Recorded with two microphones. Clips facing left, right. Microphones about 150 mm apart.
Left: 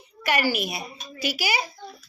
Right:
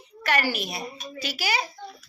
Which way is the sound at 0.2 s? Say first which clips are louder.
Left 2 dB; 10° left (ahead or behind).